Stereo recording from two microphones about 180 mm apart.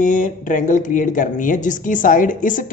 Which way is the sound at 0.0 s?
45° left (ahead or behind).